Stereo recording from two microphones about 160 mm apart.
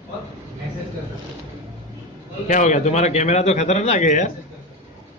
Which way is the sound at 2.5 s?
50° left (ahead or behind).